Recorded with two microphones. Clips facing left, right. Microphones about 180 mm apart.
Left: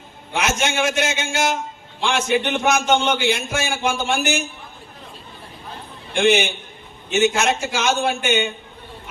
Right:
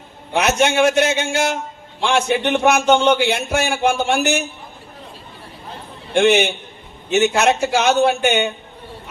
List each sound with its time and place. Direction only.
0.3 s a man's voice: 65° right (ahead or behind)
7.1 s a man's voice: 65° right (ahead or behind)